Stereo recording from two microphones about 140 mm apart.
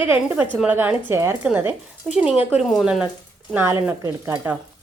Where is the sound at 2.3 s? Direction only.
40° left (ahead or behind).